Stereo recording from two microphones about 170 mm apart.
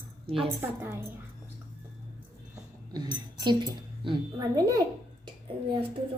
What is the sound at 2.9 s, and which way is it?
A woman's voice, 25° right (ahead or behind).